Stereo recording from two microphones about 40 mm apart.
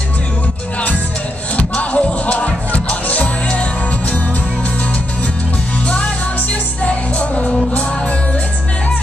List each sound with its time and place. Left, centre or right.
1.6 s music: left
6.8 s music: left